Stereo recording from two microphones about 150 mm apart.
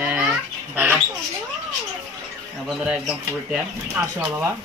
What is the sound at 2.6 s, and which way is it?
Speech, 5° right (ahead or behind).